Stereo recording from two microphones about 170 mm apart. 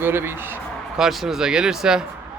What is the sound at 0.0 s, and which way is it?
Speech, 15° right (ahead or behind).